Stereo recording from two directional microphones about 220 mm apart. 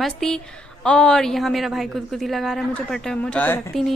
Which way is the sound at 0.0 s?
Centre (ahead or behind).